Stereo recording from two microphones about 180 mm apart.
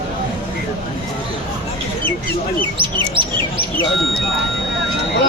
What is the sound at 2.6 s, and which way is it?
Chirp, 25° right (ahead or behind).